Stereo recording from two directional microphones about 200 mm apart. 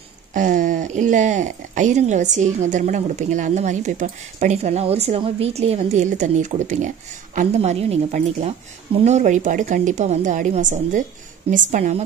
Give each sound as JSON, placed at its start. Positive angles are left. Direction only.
{"t": 0.3, "sound": "speech", "side_deg": -40}